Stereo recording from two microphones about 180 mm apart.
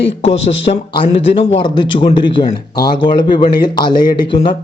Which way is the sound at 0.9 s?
30° left (ahead or behind).